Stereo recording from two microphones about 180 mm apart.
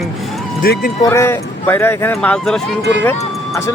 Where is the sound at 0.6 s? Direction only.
60° left (ahead or behind).